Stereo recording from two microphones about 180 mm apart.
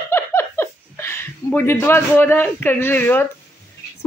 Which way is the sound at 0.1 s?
15° left (ahead or behind).